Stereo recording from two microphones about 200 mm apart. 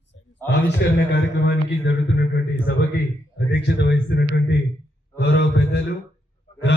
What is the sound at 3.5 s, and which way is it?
A man's voice, 55° left (ahead or behind).